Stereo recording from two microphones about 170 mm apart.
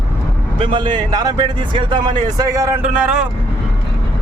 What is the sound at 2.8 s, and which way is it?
Speech, 5° right (ahead or behind).